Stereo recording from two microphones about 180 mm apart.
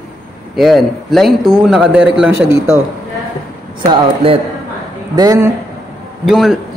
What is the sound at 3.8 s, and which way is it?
Speech, 30° right (ahead or behind).